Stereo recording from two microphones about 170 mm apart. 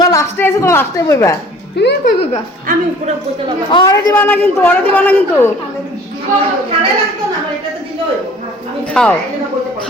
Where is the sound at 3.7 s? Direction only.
25° left (ahead or behind).